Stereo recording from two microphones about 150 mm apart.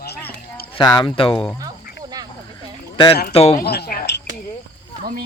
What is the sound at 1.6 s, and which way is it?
Cricket, 25° right (ahead or behind).